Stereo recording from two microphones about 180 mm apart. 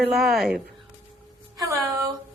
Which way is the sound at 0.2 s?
Centre (ahead or behind).